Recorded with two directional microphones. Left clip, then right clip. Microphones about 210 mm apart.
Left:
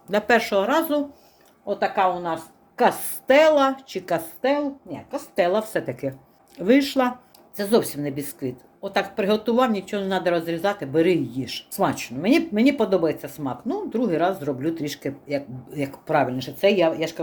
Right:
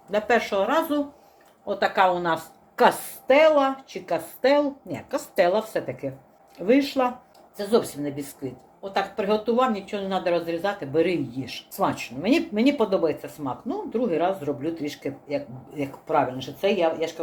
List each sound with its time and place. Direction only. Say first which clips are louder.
0.1 s speech: left 3 dB; 40° left (ahead or behind)
1.6 s a woman's voice: even; 15° left (ahead or behind)
2.0 s a woman's voice: right 3 dB; 5° right (ahead or behind)
3.2 s speech: left 1 dB; 30° left (ahead or behind)
4.4 s a woman's voice: right 3 dB; 10° left (ahead or behind)
4.9 s a woman's voice: right 2 dB; 15° right (ahead or behind)
5.3 s a woman's voice: even; 15° left (ahead or behind)
6.0 s speech: left 3 dB; 35° left (ahead or behind)
7.5 s speech: left 2 dB; 50° left (ahead or behind)